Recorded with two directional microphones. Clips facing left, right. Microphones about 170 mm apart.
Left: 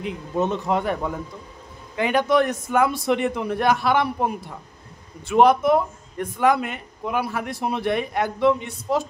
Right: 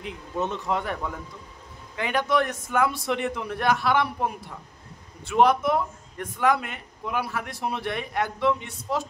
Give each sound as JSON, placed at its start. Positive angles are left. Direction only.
{"t": 0.0, "sound": "speech", "side_deg": 15}